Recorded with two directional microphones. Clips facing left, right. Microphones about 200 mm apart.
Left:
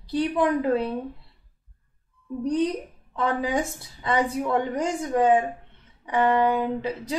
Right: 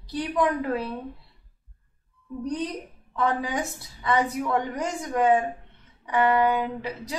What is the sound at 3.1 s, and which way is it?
A woman's voice, 25° left (ahead or behind).